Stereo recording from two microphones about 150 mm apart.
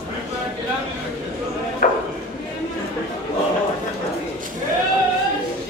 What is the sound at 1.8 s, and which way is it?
Chop, 70° left (ahead or behind).